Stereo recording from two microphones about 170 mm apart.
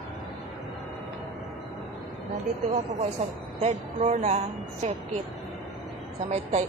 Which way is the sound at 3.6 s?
40° right (ahead or behind).